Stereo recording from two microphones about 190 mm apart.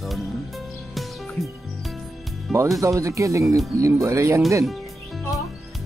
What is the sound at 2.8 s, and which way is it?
Speech, 15° right (ahead or behind).